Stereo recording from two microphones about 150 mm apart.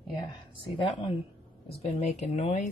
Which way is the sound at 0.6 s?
35° left (ahead or behind).